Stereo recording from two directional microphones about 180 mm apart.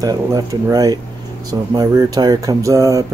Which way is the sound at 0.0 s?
20° right (ahead or behind).